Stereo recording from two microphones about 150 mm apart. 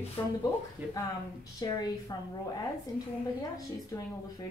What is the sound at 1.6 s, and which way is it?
Speech, 25° left (ahead or behind).